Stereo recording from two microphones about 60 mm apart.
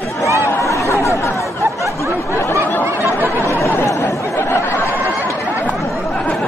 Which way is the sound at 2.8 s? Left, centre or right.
Right.